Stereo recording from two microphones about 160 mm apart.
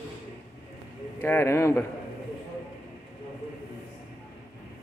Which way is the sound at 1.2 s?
15° left (ahead or behind).